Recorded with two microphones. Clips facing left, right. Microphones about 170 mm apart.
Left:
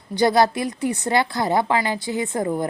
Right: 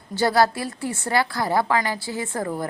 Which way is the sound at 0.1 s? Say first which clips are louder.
Left 2 dB; 20° left (ahead or behind).